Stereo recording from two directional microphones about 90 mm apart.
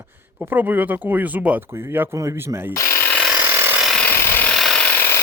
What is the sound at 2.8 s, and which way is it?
Speech, 30° left (ahead or behind).